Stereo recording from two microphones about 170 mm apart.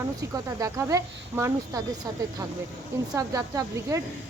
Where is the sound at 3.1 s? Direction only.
20° right (ahead or behind).